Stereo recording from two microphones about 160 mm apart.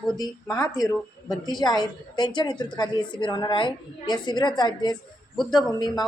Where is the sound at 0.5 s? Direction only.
20° left (ahead or behind).